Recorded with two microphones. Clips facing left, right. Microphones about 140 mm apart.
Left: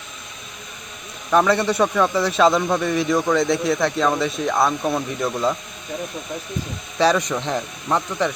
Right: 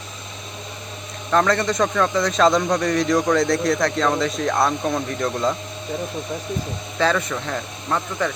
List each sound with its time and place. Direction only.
1.3 s speech: 10° left (ahead or behind)
7.0 s speech: 15° left (ahead or behind)